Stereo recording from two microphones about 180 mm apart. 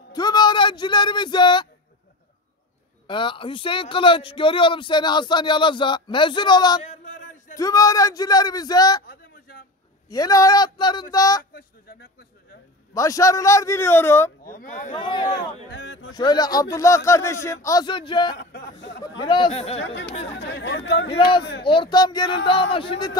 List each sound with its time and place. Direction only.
0.1 s speech: 20° left (ahead or behind)
3.1 s speech: 25° left (ahead or behind)
9.0 s a sound: 55° left (ahead or behind)
10.0 s speech: 20° left (ahead or behind)
11.5 s speech: 60° left (ahead or behind)
12.9 s a man's voice: 20° left (ahead or behind)
14.4 s speech: 50° left (ahead or behind)
15.0 s speech: 25° left (ahead or behind)
15.7 s speech: 75° left (ahead or behind)
16.1 s speech: 25° left (ahead or behind)
18.3 s speech: 65° left (ahead or behind)
19.1 s speech: 25° left (ahead or behind)
20.3 s speech: 65° left (ahead or behind)
21.1 s speech: 25° left (ahead or behind)